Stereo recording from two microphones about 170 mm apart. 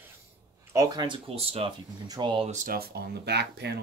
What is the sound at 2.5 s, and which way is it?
Speech, 50° right (ahead or behind).